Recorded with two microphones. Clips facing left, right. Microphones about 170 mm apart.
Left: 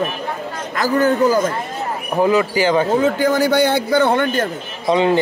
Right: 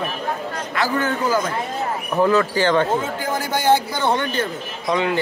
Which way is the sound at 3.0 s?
80° left.